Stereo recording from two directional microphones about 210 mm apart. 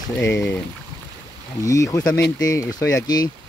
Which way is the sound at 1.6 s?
15° left (ahead or behind).